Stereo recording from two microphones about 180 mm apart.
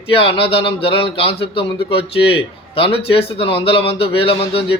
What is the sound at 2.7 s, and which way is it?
A man's voice, 30° left (ahead or behind).